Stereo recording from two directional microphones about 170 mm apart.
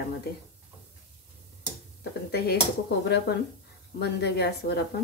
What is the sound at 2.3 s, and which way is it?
Speech, 70° left (ahead or behind).